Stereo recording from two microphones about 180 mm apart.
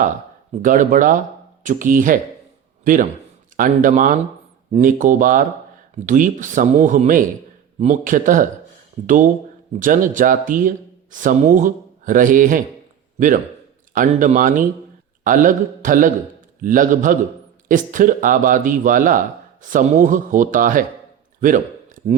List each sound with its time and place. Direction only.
0.6 s a man's voice: 45° right (ahead or behind)
9.8 s a man's voice: 45° right (ahead or behind)